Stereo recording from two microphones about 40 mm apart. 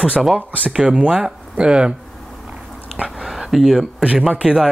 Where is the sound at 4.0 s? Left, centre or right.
Right.